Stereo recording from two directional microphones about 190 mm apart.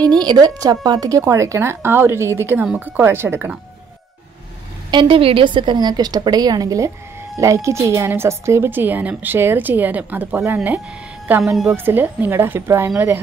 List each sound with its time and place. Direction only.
0.2 s a woman's voice: 20° right (ahead or behind)
4.9 s a woman's voice: 30° right (ahead or behind); by 13.2 s 10° right (ahead or behind)